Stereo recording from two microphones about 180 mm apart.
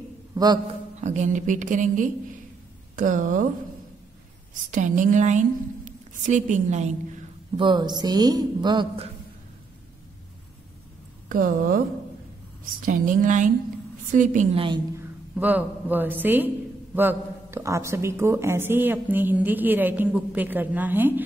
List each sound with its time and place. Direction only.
0.3 s a sound: 20° right (ahead or behind)
1.0 s a woman's voice: 40° right (ahead or behind)
4.6 s a woman's voice: 45° right (ahead or behind)
7.5 s a woman's voice: 25° right (ahead or behind)
11.2 s a woman's voice: 50° right (ahead or behind)
12.8 s a woman's voice: 45° right (ahead or behind)
15.0 s speech: 10° right (ahead or behind)